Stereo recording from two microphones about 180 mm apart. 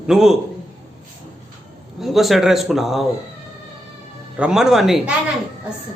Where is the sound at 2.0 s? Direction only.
Centre (ahead or behind).